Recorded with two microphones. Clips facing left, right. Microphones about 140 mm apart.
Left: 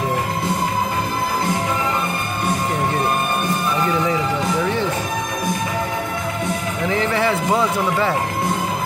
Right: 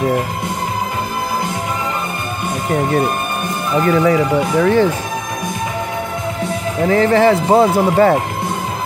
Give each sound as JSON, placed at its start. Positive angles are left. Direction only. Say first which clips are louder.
{"t": 4.1, "sound": "speech", "louder": "right 6 dB", "side_deg": -65}
{"t": 6.8, "sound": "speech", "louder": "right 9 dB", "side_deg": -40}